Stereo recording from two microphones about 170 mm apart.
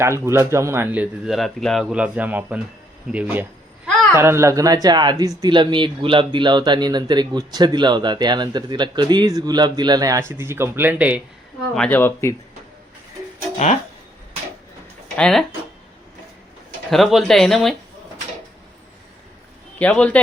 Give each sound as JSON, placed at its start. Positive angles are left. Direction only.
{"t": 0.0, "sound": "speech", "side_deg": -15}
{"t": 11.7, "sound": "speech", "side_deg": 5}
{"t": 15.1, "sound": "speech", "side_deg": 5}
{"t": 16.9, "sound": "speech", "side_deg": 0}
{"t": 19.8, "sound": "speech", "side_deg": 5}